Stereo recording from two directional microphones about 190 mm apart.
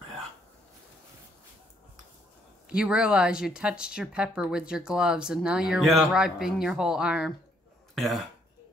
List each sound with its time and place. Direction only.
2.7 s speech: 5° right (ahead or behind)